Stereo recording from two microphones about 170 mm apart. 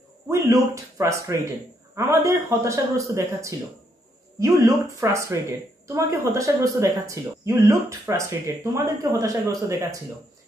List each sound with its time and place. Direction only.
0.3 s a man's voice: 20° right (ahead or behind)